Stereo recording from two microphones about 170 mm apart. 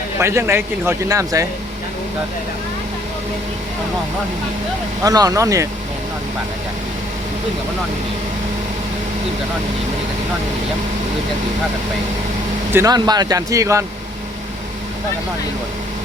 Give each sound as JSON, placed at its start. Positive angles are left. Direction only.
{"t": 0.2, "sound": "speech", "side_deg": -15}
{"t": 5.0, "sound": "speech", "side_deg": -20}
{"t": 12.7, "sound": "speech", "side_deg": -20}